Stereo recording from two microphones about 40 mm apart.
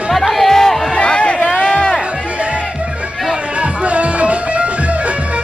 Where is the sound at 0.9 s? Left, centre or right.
Left.